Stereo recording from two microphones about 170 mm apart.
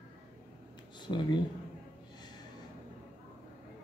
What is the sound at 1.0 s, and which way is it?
Speech, 25° left (ahead or behind).